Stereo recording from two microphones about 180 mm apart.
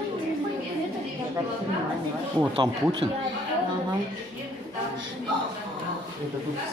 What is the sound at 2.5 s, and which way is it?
Speech, 30° right (ahead or behind).